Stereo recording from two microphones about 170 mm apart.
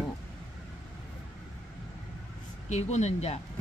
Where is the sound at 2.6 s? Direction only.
40° left (ahead or behind).